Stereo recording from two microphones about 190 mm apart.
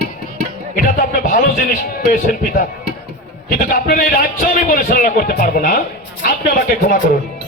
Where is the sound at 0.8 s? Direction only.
50° left (ahead or behind).